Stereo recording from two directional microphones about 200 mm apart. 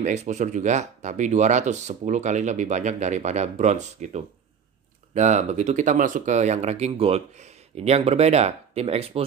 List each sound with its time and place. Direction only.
0.0 s speech: 35° right (ahead or behind)